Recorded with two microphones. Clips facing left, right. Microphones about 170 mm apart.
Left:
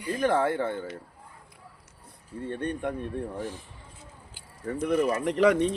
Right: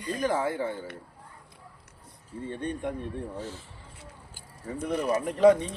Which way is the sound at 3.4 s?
15° left (ahead or behind).